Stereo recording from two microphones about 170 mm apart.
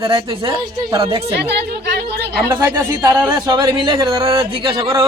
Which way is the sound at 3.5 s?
25° right (ahead or behind).